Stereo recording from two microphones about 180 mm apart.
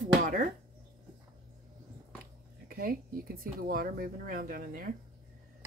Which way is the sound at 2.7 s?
55° right (ahead or behind).